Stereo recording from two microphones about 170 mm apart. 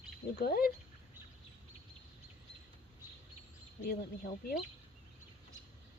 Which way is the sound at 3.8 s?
65° left (ahead or behind).